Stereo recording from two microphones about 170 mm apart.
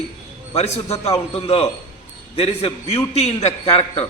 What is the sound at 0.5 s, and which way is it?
A man's voice, 40° left (ahead or behind).